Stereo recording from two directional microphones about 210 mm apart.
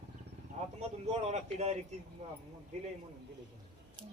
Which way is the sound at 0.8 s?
30° right (ahead or behind).